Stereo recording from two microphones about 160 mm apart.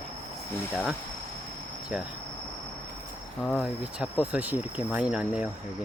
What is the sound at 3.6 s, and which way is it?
Speech, 5° right (ahead or behind).